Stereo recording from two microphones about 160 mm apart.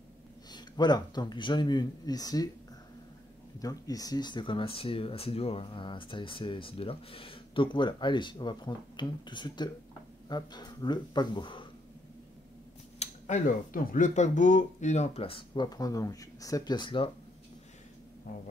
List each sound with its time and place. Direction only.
0.5 s speech: 25° left (ahead or behind)
3.5 s speech: 20° left (ahead or behind)
13.0 s a sound: 45° left (ahead or behind)
13.7 s speech: 55° left (ahead or behind); by 17.1 s 30° left (ahead or behind)
18.3 s music: 65° left (ahead or behind)